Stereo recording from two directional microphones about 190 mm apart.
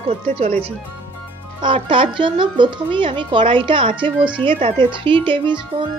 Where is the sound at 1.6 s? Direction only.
25° right (ahead or behind).